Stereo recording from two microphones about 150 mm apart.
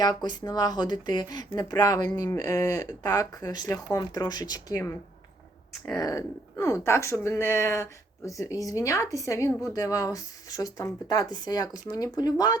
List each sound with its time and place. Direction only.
0.0 s speech: 30° left (ahead or behind)
5.8 s speech: 20° left (ahead or behind)